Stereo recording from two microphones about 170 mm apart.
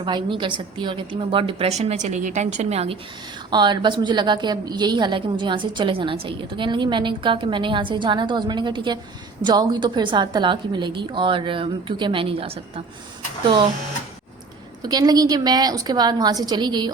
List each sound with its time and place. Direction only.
0.0 s a woman's voice: 30° right (ahead or behind)
3.5 s a woman's voice: 25° right (ahead or behind)
14.8 s a woman's voice: 25° right (ahead or behind)